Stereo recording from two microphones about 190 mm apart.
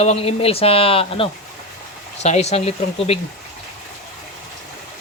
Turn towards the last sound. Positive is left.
turn(degrees=35)  # may be behind; listen again after turning